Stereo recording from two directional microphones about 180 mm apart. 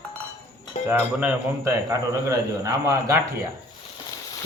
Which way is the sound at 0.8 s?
10° right (ahead or behind).